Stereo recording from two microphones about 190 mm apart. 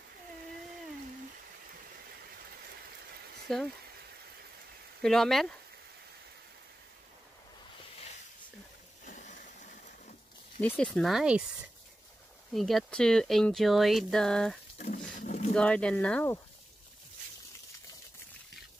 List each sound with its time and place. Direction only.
3.5 s speech: centre (ahead or behind)
5.0 s speech: centre (ahead or behind)
9.0 s a sound: 40° left (ahead or behind)
10.6 s speech: 5° left (ahead or behind)
12.5 s speech: centre (ahead or behind)
15.1 s a sound: 40° left (ahead or behind)
15.5 s speech: 5° left (ahead or behind)